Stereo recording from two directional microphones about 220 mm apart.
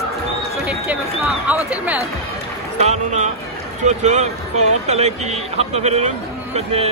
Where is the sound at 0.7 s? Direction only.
5° right (ahead or behind).